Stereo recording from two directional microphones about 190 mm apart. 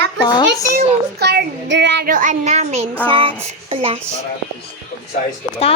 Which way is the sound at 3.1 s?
25° right (ahead or behind).